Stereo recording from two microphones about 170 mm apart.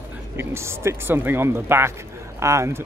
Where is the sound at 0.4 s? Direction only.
15° right (ahead or behind).